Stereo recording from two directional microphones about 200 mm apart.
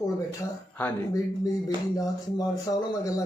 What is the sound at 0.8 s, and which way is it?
Speech, 10° left (ahead or behind).